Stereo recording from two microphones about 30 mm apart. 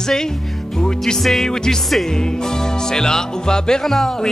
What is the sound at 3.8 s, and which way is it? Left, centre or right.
Speech, centre.